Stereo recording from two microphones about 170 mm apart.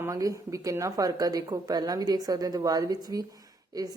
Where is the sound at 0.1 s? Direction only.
20° right (ahead or behind).